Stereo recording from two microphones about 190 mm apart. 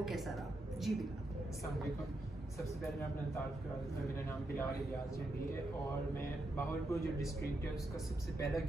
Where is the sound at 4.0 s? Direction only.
15° left (ahead or behind).